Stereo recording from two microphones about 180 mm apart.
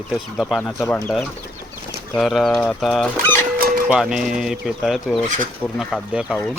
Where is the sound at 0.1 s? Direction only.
Centre (ahead or behind).